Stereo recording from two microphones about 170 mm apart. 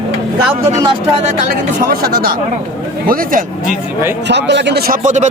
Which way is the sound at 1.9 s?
60° right (ahead or behind).